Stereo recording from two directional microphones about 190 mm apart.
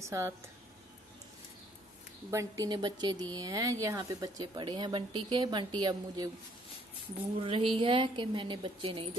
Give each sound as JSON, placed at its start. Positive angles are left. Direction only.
{"t": 0.0, "sound": "speech", "side_deg": -15}
{"t": 2.3, "sound": "a woman's voice", "side_deg": -20}
{"t": 7.3, "sound": "a woman's voice", "side_deg": -30}